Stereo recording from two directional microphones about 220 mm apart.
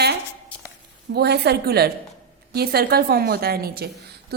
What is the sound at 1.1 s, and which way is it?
A woman's voice, 50° right (ahead or behind).